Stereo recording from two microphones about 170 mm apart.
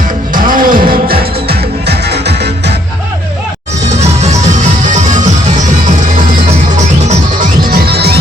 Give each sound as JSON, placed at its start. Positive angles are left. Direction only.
{"t": 0.3, "sound": "music", "side_deg": -55}
{"t": 3.8, "sound": "music", "side_deg": -40}
{"t": 7.1, "sound": "music", "side_deg": -60}